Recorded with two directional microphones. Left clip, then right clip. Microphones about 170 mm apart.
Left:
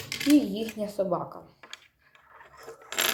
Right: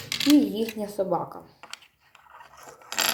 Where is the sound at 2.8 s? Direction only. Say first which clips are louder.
Right 2 dB; 5° right (ahead or behind).